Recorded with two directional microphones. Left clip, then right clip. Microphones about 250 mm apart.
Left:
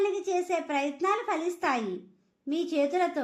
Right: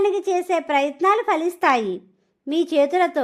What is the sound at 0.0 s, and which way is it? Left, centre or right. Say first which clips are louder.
A woman's voice: right 8 dB; right.